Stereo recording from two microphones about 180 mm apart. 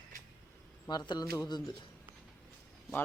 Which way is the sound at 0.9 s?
25° left (ahead or behind).